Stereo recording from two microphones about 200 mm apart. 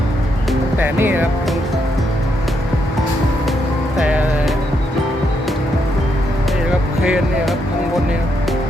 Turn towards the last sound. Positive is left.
turn(degrees=0)  # may be behind; listen again after turning